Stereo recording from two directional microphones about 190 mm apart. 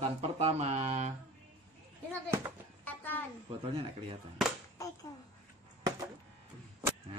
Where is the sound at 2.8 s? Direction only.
10° left (ahead or behind).